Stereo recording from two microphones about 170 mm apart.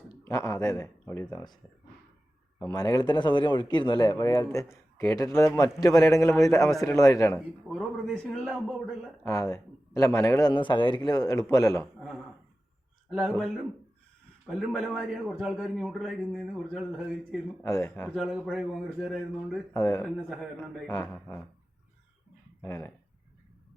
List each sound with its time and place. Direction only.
0.3 s speech: 20° left (ahead or behind)
2.6 s speech: 20° left (ahead or behind)
7.3 s a man's voice: centre (ahead or behind)
9.2 s speech: 20° left (ahead or behind)
11.9 s speech: centre (ahead or behind)
14.4 s a man's voice: 5° left (ahead or behind)
17.6 s speech: 15° left (ahead or behind)
18.1 s a man's voice: centre (ahead or behind)
19.7 s speech: 20° left (ahead or behind)
20.0 s a man's voice: centre (ahead or behind)
22.6 s speech: 15° left (ahead or behind)